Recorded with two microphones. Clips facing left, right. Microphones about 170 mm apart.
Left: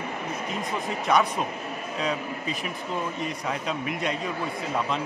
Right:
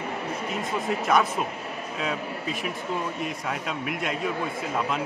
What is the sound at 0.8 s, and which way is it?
A man's voice, centre (ahead or behind).